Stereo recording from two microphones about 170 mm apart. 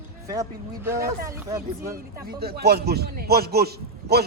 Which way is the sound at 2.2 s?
65° right (ahead or behind).